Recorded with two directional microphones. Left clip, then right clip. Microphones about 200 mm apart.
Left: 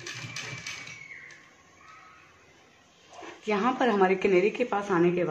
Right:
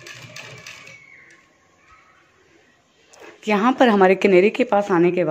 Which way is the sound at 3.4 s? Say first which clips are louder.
Right 9 dB; 50° right (ahead or behind).